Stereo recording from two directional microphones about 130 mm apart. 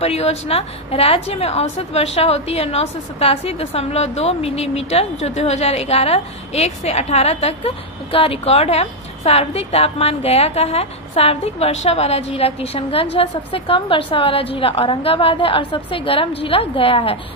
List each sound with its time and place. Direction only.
0.0 s a woman's voice: 50° left (ahead or behind)